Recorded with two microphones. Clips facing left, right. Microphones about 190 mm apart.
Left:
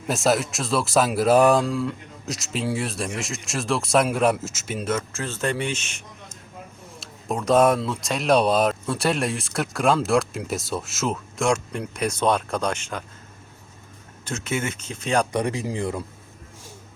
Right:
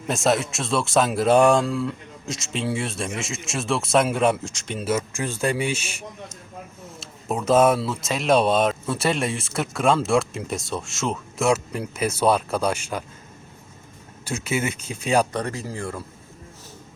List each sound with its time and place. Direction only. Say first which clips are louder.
0.1 s speech: even; centre (ahead or behind)
4.9 s speech: right 3 dB; 10° right (ahead or behind)
7.0 s speech: right 1 dB; centre (ahead or behind)
14.3 s speech: right 2 dB; 10° right (ahead or behind)
15.3 s speech: left 3 dB; 15° left (ahead or behind)